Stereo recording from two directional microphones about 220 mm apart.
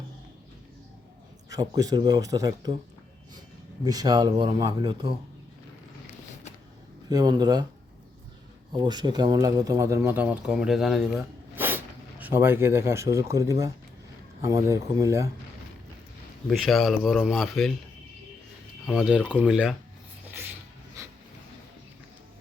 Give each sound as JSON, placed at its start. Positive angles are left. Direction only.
{"t": 1.5, "sound": "speech", "side_deg": -15}
{"t": 3.8, "sound": "speech", "side_deg": -15}
{"t": 7.1, "sound": "speech", "side_deg": -15}
{"t": 8.7, "sound": "speech", "side_deg": -20}
{"t": 16.5, "sound": "speech", "side_deg": 0}
{"t": 18.9, "sound": "speech", "side_deg": 0}
{"t": 21.0, "sound": "a sound", "side_deg": -15}